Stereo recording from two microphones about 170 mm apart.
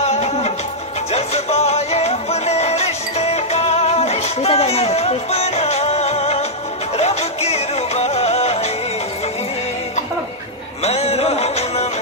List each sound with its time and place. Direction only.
0.0 s music: 40° left (ahead or behind)
10.8 s music: 40° left (ahead or behind)